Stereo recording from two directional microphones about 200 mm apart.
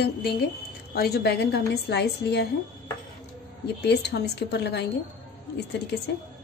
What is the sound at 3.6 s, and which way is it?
A woman's voice, 55° left (ahead or behind).